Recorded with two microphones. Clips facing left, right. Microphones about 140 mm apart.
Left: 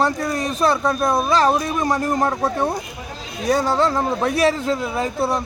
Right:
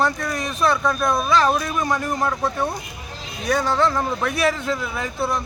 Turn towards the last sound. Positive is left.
turn(degrees=35)  # may be behind; listen again after turning